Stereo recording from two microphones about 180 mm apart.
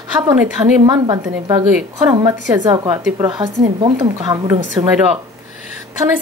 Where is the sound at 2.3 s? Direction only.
20° right (ahead or behind).